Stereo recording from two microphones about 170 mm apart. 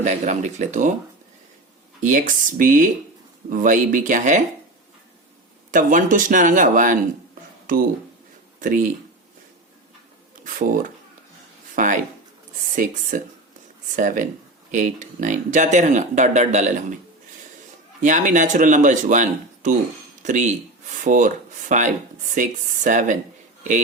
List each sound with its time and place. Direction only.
0.0 s speech: 45° right (ahead or behind)
2.0 s speech: 45° right (ahead or behind)
5.7 s speech: 50° right (ahead or behind)
8.5 s speech: 50° right (ahead or behind)
10.4 s speech: 50° right (ahead or behind)
18.0 s speech: 50° right (ahead or behind)